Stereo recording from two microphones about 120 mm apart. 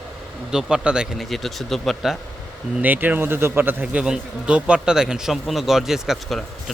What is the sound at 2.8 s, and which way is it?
Speech, 15° right (ahead or behind).